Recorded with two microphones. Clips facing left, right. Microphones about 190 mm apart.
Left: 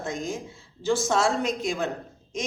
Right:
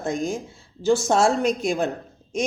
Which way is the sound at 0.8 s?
50° right (ahead or behind).